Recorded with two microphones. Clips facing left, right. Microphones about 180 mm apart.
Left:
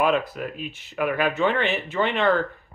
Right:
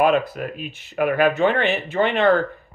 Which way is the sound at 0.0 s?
55° right (ahead or behind).